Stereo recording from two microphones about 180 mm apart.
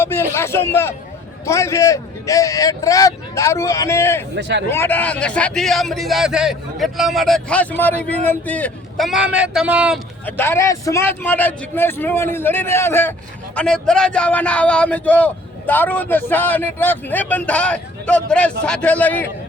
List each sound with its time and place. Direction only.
0.0 s a man's voice: 15° left (ahead or behind)
4.4 s a man's voice: 70° right (ahead or behind)
4.7 s speech: 10° left (ahead or behind); by 10.0 s 5° right (ahead or behind)
10.2 s a man's voice: 10° left (ahead or behind)